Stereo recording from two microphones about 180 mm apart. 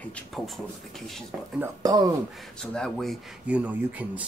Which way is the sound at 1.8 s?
20° right (ahead or behind).